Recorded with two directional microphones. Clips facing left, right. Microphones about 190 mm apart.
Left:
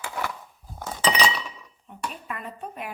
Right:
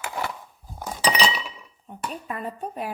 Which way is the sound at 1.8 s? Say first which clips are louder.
Right 2 dB; 35° right (ahead or behind).